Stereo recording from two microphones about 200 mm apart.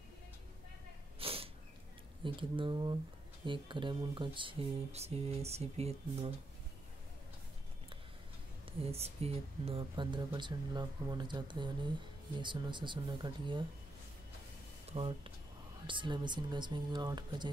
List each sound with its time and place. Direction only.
1.2 s snort: 30° right (ahead or behind)
2.2 s speech: 25° right (ahead or behind)
8.8 s speech: 30° right (ahead or behind)
14.9 s speech: 25° right (ahead or behind)